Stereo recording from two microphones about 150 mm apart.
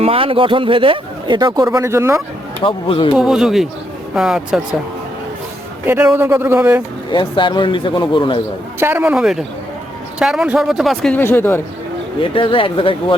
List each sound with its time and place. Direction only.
0.0 s speech: 40° right (ahead or behind); by 2.2 s 20° right (ahead or behind)
2.6 s speech: 35° left (ahead or behind)
3.2 s speech: 5° right (ahead or behind)
5.8 s speech: 15° right (ahead or behind)
7.1 s speech: 35° left (ahead or behind)
8.8 s speech: 15° right (ahead or behind)
11.1 s speech: 15° left (ahead or behind)
12.2 s speech: 35° left (ahead or behind)